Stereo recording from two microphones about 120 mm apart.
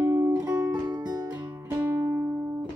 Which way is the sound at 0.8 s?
35° right (ahead or behind).